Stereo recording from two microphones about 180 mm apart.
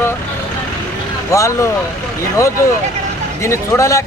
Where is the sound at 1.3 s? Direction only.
15° left (ahead or behind).